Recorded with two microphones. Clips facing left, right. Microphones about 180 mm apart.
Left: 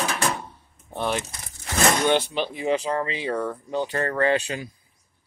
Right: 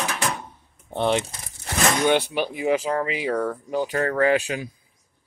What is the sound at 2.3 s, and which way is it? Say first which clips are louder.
Speech: right 2 dB; 10° right (ahead or behind).